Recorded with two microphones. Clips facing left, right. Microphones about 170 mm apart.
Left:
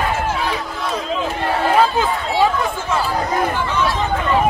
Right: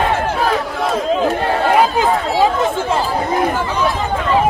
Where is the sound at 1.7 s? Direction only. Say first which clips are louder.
Right 2 dB; 15° right (ahead or behind).